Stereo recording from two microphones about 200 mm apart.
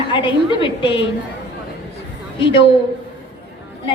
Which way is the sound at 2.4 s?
25° left (ahead or behind).